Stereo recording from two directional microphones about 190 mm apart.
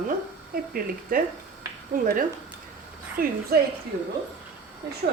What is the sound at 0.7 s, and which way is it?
Speech, 45° right (ahead or behind).